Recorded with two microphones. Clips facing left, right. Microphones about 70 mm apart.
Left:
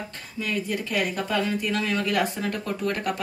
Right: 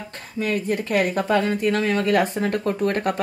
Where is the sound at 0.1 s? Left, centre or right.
Right.